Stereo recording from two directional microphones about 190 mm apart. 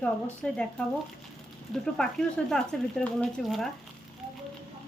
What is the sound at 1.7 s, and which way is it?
Speech, 5° left (ahead or behind).